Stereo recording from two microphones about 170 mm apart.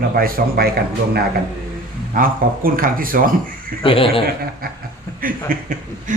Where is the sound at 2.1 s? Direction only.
55° right (ahead or behind).